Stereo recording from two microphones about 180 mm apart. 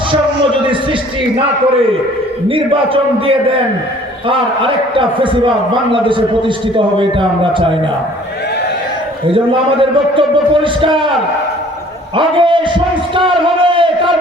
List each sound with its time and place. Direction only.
2.5 s a man's voice: 30° right (ahead or behind)
9.3 s a man's voice: 30° right (ahead or behind)
12.1 s a man's voice: 30° right (ahead or behind)